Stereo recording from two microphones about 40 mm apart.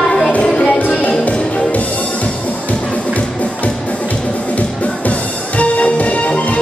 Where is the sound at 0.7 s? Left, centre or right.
Left.